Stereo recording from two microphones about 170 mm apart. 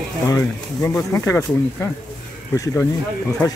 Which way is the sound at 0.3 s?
20° left (ahead or behind).